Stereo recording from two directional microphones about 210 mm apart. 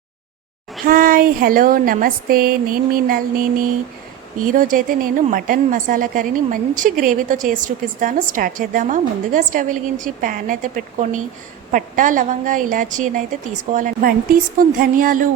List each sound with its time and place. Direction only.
0.9 s a woman's voice: 40° right (ahead or behind)